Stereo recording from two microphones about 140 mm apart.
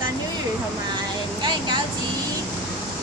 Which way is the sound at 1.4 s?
30° right (ahead or behind).